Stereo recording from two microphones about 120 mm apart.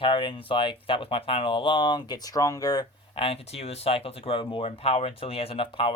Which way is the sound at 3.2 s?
55° left (ahead or behind).